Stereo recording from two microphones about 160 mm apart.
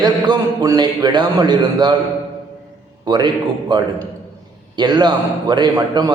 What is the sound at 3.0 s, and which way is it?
A man's voice, 25° right (ahead or behind).